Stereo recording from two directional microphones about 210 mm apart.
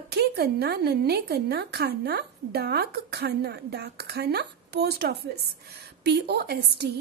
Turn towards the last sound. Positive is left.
turn(degrees=-50)  # may be behind; listen again after turning